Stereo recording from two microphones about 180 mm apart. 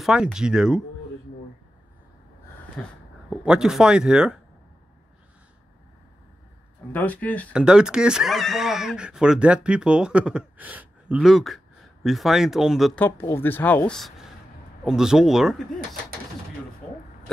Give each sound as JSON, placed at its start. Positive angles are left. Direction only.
{"t": 0.0, "sound": "speech", "side_deg": -5}
{"t": 2.8, "sound": "speech", "side_deg": 5}
{"t": 6.9, "sound": "speech", "side_deg": 10}
{"t": 7.5, "sound": "speech", "side_deg": -5}
{"t": 13.0, "sound": "speech", "side_deg": 15}